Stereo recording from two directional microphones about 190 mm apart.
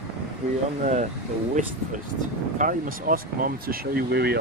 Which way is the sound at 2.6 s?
45° right (ahead or behind).